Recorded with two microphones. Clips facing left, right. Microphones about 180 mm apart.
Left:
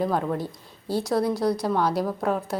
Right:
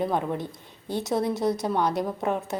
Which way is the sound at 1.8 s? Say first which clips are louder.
Left 1 dB; centre (ahead or behind).